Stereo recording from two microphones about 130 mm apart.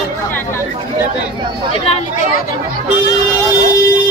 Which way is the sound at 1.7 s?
50° left (ahead or behind).